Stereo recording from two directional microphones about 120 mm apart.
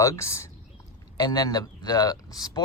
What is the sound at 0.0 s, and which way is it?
Speech, 25° left (ahead or behind).